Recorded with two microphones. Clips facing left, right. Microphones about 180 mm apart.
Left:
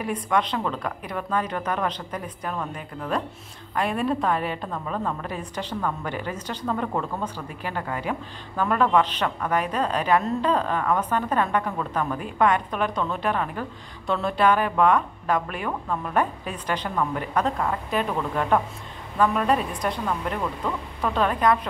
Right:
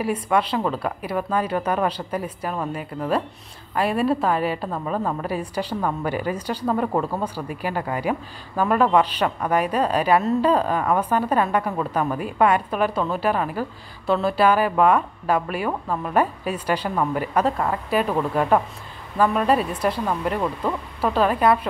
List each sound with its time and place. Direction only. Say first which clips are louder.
0.0 s a woman's voice: right 3 dB; 5° right (ahead or behind)
6.9 s speech: right 4 dB; 35° right (ahead or behind)
7.3 s a woman's voice: right 5 dB; 10° right (ahead or behind)
20.3 s speech: right 4 dB; 30° right (ahead or behind)
21.1 s a woman's voice: right 3 dB; 5° right (ahead or behind)